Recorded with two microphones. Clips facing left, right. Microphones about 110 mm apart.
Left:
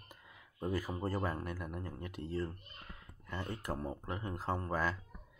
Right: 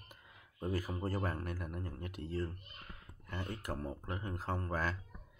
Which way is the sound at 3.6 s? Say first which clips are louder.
Left 2 dB; 25° left (ahead or behind).